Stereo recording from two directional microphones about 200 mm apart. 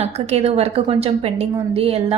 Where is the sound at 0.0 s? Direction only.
30° right (ahead or behind).